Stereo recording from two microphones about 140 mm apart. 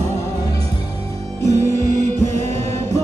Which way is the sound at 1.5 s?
55° right (ahead or behind).